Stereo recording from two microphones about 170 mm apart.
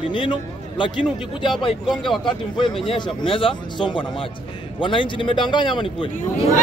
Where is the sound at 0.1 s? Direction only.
30° left (ahead or behind).